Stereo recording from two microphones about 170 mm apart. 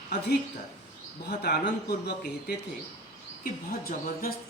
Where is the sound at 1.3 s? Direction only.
75° left (ahead or behind).